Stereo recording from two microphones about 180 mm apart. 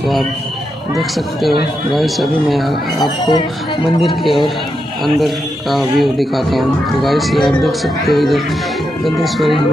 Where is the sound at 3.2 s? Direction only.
25° left (ahead or behind).